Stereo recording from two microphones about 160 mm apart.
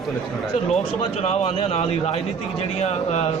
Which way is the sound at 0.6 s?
45° left (ahead or behind).